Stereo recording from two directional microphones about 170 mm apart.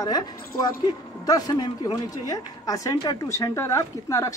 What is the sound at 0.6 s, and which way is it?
A man's voice, 20° left (ahead or behind).